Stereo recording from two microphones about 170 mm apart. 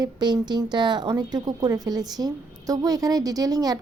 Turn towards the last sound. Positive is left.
turn(degrees=-20)  # may be behind; listen again after turning